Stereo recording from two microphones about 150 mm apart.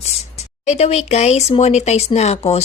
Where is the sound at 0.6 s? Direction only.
45° left (ahead or behind).